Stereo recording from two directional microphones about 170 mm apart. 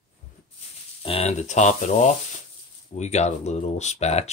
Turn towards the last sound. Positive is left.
turn(degrees=40)  # may be behind; listen again after turning